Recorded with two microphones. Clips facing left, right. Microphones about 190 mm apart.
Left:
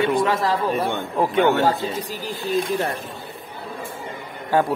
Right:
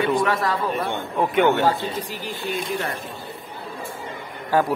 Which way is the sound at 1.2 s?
40° left (ahead or behind).